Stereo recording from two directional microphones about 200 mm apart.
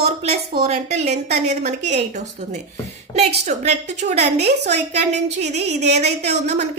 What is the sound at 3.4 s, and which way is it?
Speech, 35° right (ahead or behind).